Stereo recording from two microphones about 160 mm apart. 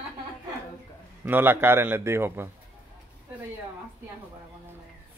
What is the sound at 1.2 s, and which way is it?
Speech, 10° right (ahead or behind).